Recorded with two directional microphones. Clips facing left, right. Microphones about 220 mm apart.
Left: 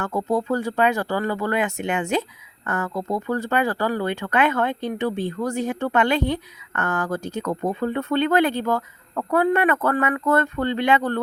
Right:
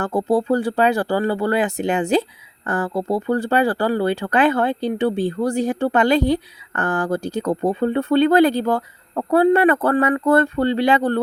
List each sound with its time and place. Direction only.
0.0 s speech: 30° right (ahead or behind)